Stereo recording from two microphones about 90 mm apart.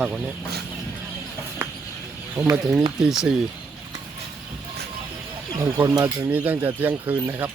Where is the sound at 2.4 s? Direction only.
30° right (ahead or behind).